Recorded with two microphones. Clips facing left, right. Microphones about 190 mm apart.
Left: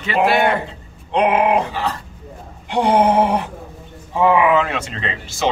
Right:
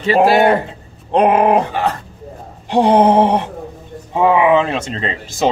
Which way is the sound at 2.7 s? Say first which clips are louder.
Right 4 dB; 35° right (ahead or behind).